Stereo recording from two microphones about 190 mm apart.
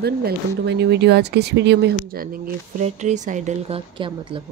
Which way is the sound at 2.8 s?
40° right (ahead or behind).